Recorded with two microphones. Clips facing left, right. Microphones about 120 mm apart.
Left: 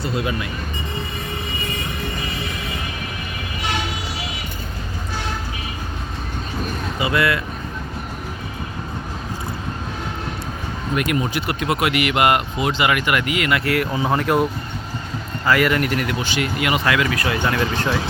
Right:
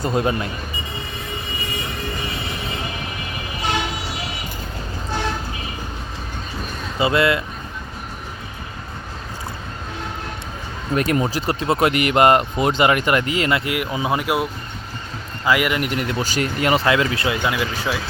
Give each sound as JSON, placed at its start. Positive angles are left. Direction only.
{"t": 0.0, "sound": "speech", "side_deg": -45}
{"t": 7.0, "sound": "speech", "side_deg": -25}
{"t": 10.9, "sound": "speech", "side_deg": -35}
{"t": 13.7, "sound": "speech", "side_deg": -15}
{"t": 15.4, "sound": "speech", "side_deg": -15}
{"t": 16.2, "sound": "speech", "side_deg": -40}
{"t": 16.8, "sound": "speech", "side_deg": -25}
{"t": 17.3, "sound": "speech", "side_deg": -10}